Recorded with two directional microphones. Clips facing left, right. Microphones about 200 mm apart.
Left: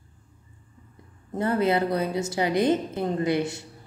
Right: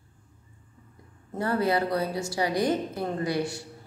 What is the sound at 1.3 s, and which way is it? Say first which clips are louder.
A woman's voice: left 2 dB; 20° left (ahead or behind).